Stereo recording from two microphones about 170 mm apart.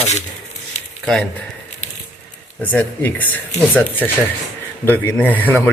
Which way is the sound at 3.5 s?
45° left (ahead or behind).